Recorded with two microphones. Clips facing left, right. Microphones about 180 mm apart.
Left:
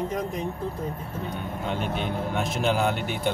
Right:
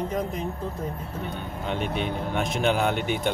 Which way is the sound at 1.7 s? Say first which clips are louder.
Right 2 dB; centre (ahead or behind).